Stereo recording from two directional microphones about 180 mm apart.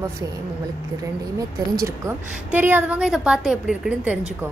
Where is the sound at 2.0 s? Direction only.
10° right (ahead or behind).